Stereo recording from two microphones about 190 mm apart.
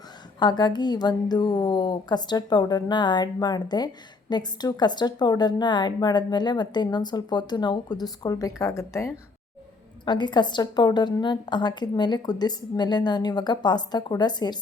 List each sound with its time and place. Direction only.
0.3 s a woman's voice: 20° left (ahead or behind)